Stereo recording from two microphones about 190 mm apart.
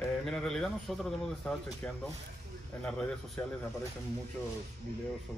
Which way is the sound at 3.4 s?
10° left (ahead or behind).